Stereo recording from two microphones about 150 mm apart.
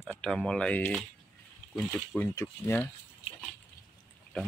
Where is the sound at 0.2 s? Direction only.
5° left (ahead or behind).